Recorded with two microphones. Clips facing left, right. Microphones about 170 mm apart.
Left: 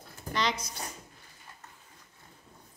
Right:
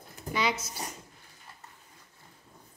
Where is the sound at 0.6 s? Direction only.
25° right (ahead or behind).